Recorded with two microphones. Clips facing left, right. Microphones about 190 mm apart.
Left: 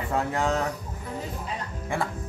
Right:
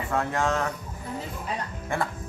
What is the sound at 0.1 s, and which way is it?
Speech, 15° left (ahead or behind).